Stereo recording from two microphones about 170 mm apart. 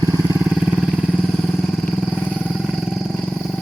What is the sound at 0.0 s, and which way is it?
Vehicle, 20° right (ahead or behind).